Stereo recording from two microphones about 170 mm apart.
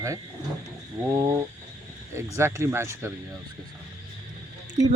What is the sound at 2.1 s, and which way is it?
Speech, 15° right (ahead or behind).